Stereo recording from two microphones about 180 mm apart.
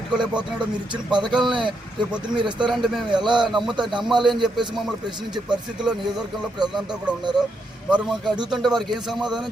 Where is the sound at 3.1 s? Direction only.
25° right (ahead or behind).